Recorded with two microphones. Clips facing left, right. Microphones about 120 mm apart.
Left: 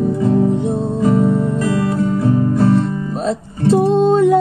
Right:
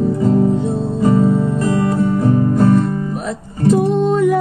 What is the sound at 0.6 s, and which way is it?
Music, 20° left (ahead or behind).